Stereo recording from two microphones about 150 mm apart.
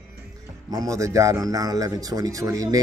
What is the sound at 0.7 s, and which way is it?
A man's voice, 25° right (ahead or behind).